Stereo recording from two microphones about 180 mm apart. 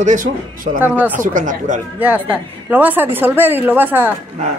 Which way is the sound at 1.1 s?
45° right (ahead or behind).